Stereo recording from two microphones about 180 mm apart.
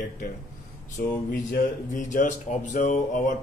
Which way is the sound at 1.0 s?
60° left (ahead or behind).